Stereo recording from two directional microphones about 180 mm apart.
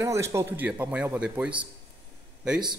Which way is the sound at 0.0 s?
15° right (ahead or behind).